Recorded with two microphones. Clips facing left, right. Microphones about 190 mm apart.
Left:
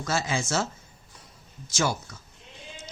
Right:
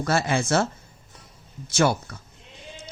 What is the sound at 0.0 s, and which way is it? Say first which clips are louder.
Speech: right 5 dB; 60° right (ahead or behind).